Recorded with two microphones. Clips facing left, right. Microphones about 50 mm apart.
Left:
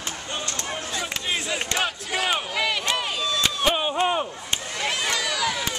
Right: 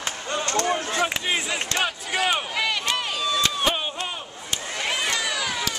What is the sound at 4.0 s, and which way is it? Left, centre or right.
Chop, left.